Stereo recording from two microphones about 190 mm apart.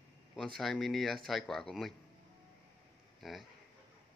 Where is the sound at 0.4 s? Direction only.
Centre (ahead or behind).